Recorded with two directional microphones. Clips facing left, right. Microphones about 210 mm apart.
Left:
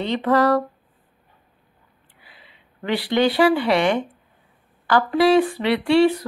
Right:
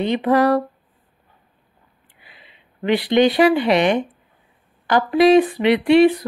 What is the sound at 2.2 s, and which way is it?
Speech, 20° right (ahead or behind).